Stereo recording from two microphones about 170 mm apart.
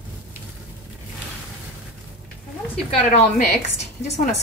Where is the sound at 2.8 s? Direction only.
35° left (ahead or behind).